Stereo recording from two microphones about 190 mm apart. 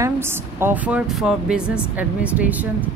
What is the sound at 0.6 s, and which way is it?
A woman's voice, 10° right (ahead or behind).